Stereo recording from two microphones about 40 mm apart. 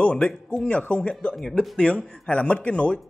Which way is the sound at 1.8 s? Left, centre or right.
Left.